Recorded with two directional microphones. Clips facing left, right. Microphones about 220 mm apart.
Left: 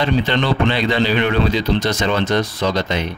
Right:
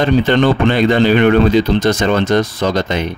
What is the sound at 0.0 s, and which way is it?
Speech, 45° right (ahead or behind).